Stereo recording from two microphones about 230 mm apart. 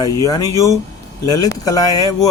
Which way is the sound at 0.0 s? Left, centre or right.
Centre.